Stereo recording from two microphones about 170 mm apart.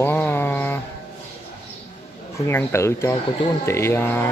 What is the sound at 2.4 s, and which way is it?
Speech, 15° left (ahead or behind).